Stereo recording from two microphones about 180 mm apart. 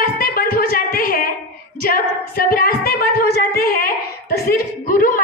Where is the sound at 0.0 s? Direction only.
55° left (ahead or behind).